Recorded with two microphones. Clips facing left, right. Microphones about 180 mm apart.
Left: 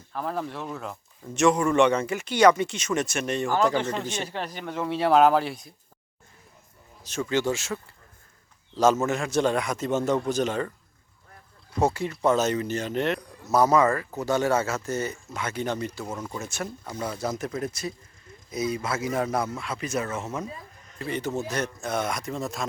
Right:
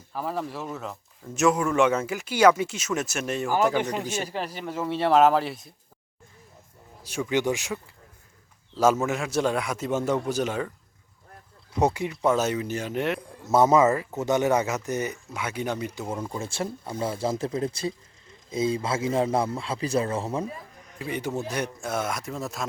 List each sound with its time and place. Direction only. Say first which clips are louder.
0.1 s speech: even; 5° right (ahead or behind)
7.0 s speech: even; 10° right (ahead or behind)
9.0 s speech: left 1 dB; 5° right (ahead or behind)
12.1 s speech: left 1 dB; 5° right (ahead or behind)
13.1 s speech: right 1 dB; 25° right (ahead or behind); by 16.0 s 10° right (ahead or behind)
16.2 s speech: right 3 dB; 30° right (ahead or behind)
21.0 s speech: left 1 dB; 10° right (ahead or behind)